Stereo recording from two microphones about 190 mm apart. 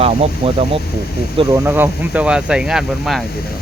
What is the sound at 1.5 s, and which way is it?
Speech, 10° right (ahead or behind).